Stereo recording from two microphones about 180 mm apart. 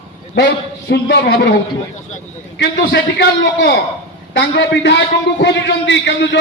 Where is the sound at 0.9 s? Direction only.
70° left (ahead or behind).